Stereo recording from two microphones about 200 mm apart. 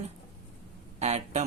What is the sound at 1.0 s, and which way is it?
Speech, 35° right (ahead or behind).